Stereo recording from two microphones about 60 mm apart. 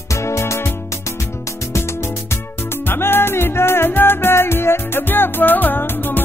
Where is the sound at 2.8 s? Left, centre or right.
Left.